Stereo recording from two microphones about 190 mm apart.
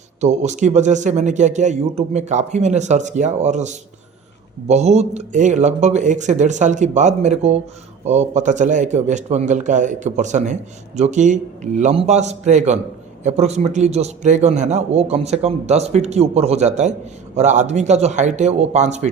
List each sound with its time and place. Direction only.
0.2 s a man's voice: 35° right (ahead or behind)